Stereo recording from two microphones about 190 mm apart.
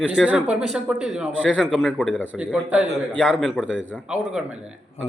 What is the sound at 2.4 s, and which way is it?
A man's voice, 5° right (ahead or behind).